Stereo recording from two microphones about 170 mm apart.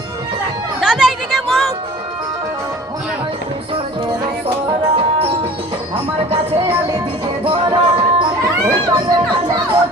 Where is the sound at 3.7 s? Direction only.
30° right (ahead or behind).